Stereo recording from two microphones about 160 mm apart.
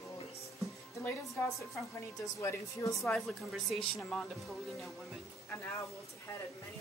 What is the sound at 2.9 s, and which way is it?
Speech, centre (ahead or behind).